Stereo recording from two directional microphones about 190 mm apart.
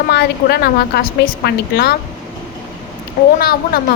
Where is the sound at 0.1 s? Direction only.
60° left (ahead or behind).